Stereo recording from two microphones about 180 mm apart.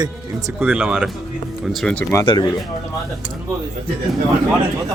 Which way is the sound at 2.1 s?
25° left (ahead or behind).